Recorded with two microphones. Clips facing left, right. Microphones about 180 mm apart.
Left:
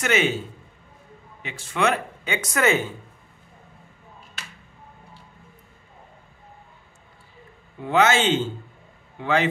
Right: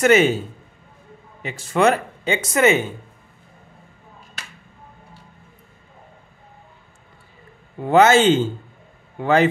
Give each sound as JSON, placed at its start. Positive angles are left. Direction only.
{"t": 0.0, "sound": "speech", "side_deg": -40}
{"t": 1.4, "sound": "speech", "side_deg": -40}
{"t": 7.8, "sound": "speech", "side_deg": -40}